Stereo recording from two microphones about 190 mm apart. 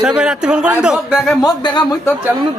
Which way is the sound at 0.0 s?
5° right (ahead or behind).